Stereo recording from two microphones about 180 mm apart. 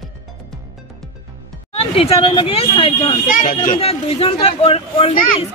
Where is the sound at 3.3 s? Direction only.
50° left (ahead or behind).